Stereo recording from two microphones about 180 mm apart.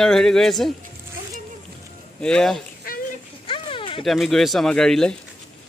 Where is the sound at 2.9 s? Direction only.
55° left (ahead or behind).